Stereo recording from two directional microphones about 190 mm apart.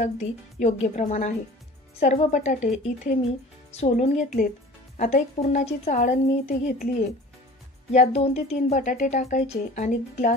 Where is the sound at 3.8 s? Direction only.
35° left (ahead or behind).